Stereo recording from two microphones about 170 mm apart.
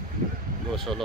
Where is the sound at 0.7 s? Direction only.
Centre (ahead or behind).